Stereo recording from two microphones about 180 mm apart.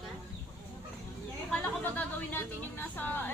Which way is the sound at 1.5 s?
10° left (ahead or behind).